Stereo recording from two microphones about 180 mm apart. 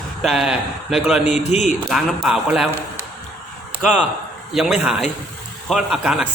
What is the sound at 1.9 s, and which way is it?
Speech, centre (ahead or behind).